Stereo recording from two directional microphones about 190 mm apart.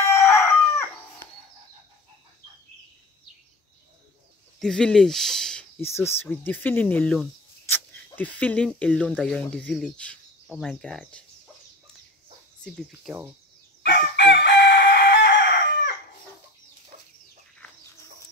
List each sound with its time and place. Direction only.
0.0 s chicken: 15° left (ahead or behind)
4.6 s speech: 5° left (ahead or behind)
12.6 s speech: centre (ahead or behind)
14.1 s chicken: 65° left (ahead or behind)
16.9 s a sound: 35° right (ahead or behind)